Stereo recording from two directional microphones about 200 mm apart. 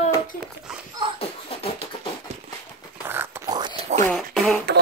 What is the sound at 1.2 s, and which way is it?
Beatboxing, 30° left (ahead or behind).